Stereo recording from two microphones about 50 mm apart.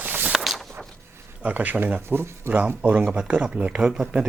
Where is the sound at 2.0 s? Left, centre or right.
Right.